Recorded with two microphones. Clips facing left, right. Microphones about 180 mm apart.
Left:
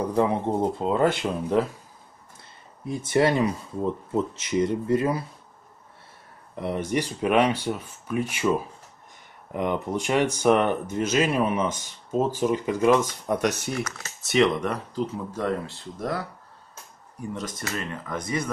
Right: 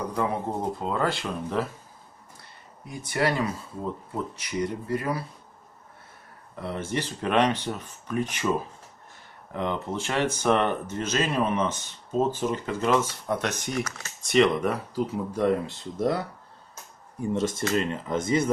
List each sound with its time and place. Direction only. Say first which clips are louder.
0.1 s speech: left 6 dB; 25° left (ahead or behind)
2.9 s speech: left 5 dB; 25° left (ahead or behind)
6.5 s speech: left 4 dB; 20° left (ahead or behind)
9.5 s speech: left 3 dB; 15° left (ahead or behind); by 16.3 s 25° right (ahead or behind)
17.3 s speech: right 7 dB; 25° right (ahead or behind)